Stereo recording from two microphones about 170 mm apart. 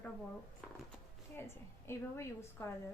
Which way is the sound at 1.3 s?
15° left (ahead or behind).